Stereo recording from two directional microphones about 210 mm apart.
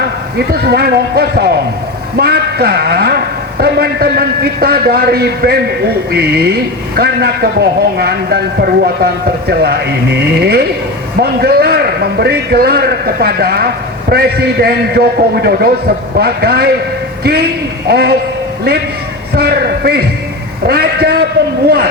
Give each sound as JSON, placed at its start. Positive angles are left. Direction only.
{"t": 0.3, "sound": "a man's voice", "side_deg": -50}
{"t": 19.3, "sound": "a man's voice", "side_deg": -50}